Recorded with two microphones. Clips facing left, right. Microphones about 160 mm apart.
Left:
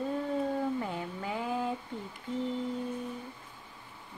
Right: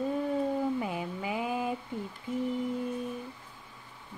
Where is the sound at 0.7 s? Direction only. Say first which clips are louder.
Right 2 dB; 10° right (ahead or behind).